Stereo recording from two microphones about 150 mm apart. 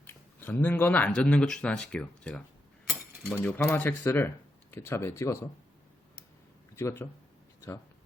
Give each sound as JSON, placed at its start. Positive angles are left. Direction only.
{"t": 0.0, "sound": "speech", "side_deg": 15}
{"t": 6.7, "sound": "speech", "side_deg": 15}